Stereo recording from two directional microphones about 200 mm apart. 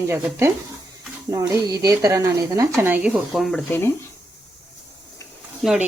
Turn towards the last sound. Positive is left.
turn(degrees=0)  # may be behind; listen again after turning